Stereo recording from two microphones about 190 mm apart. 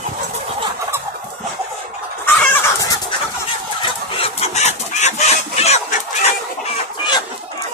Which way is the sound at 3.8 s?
30° left (ahead or behind).